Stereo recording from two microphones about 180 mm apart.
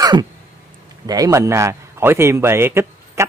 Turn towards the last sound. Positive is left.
turn(degrees=-15)  # may be behind; listen again after turning